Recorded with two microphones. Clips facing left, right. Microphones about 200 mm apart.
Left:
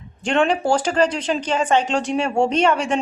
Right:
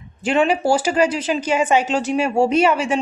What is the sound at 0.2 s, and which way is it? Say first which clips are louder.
Speech: right 1 dB; 5° right (ahead or behind).